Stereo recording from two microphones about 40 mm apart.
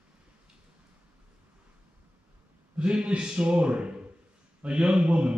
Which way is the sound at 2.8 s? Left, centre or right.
Right.